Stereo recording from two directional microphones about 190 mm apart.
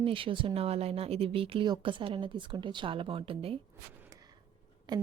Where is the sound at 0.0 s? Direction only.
30° right (ahead or behind).